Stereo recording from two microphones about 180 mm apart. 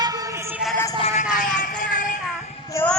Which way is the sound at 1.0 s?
40° left (ahead or behind).